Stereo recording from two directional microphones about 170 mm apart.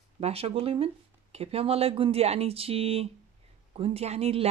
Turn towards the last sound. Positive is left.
turn(degrees=-35)  # may be behind; listen again after turning